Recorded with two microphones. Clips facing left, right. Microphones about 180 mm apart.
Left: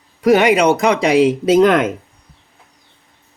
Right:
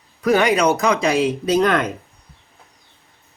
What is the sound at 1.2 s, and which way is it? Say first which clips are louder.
Speech: left 6 dB; 90° left.